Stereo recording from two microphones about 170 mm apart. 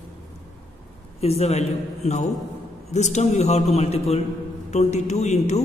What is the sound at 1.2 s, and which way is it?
A man's voice, 40° left (ahead or behind).